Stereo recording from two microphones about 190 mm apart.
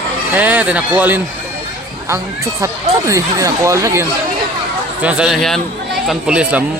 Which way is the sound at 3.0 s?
15° right (ahead or behind).